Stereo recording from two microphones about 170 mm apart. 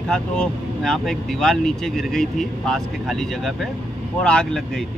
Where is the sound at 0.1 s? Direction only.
5° left (ahead or behind).